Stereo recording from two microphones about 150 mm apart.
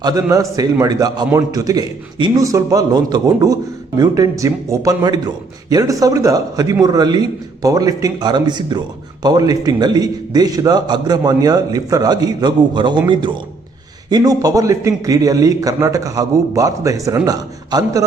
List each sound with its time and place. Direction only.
0.0 s a man's voice: 25° right (ahead or behind)
14.1 s a man's voice: 25° right (ahead or behind)